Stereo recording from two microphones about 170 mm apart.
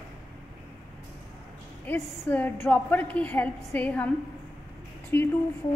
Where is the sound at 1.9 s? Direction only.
10° left (ahead or behind).